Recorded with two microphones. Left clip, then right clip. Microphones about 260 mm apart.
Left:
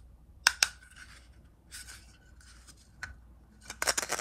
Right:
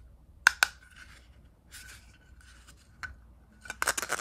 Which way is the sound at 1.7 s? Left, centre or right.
Centre.